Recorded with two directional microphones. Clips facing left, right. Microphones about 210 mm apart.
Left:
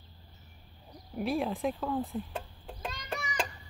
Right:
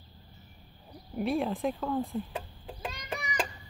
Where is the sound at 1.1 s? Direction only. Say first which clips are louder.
Right 2 dB; centre (ahead or behind).